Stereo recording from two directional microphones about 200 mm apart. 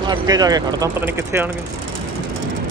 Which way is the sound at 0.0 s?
20° right (ahead or behind).